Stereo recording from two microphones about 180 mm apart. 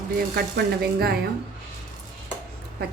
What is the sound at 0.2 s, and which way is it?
Speech, 60° right (ahead or behind).